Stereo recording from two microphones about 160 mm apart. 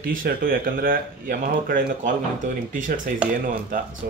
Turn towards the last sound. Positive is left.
turn(degrees=-60)  # may be behind; listen again after turning